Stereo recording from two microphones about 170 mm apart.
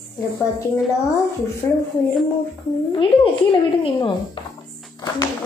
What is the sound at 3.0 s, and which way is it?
A woman's voice, 30° left (ahead or behind).